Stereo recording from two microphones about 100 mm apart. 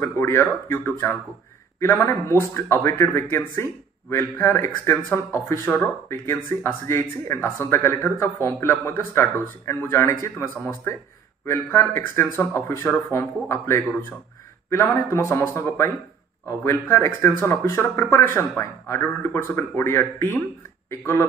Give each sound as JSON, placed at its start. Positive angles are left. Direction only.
{"t": 0.0, "sound": "speech", "side_deg": 25}